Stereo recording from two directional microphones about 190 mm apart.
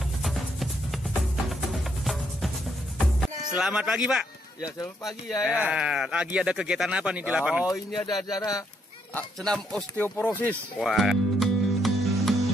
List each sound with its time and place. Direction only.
0.2 s music: centre (ahead or behind)
3.5 s speech: 5° right (ahead or behind)
7.6 s speech: 15° left (ahead or behind)
9.1 s speech: 5° left (ahead or behind)